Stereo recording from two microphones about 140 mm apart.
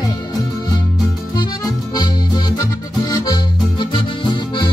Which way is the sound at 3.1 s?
30° left (ahead or behind).